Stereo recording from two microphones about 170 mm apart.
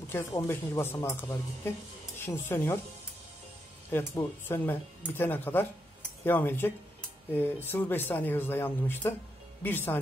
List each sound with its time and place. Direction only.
0.4 s speech: 15° left (ahead or behind)
3.9 s speech: 15° left (ahead or behind)